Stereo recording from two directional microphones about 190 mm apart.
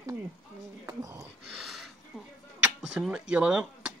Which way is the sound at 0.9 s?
15° right (ahead or behind).